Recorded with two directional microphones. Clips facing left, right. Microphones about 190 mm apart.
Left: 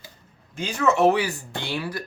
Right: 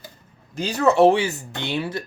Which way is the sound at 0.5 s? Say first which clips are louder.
Right 4 dB; 35° right (ahead or behind).